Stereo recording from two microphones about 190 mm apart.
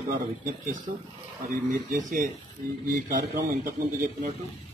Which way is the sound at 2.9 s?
45° right (ahead or behind).